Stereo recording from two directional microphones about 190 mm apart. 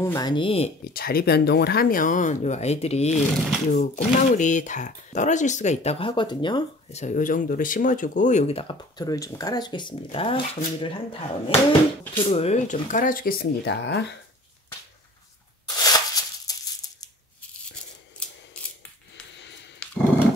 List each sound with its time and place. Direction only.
0.0 s speech: 20° left (ahead or behind)
0.9 s speech: 50° left (ahead or behind); by 7.0 s 25° left (ahead or behind)
7.0 s speech: 40° left (ahead or behind); by 14.1 s 65° left (ahead or behind)
15.7 s tearing: 20° left (ahead or behind)
19.3 s a sound: 70° left (ahead or behind)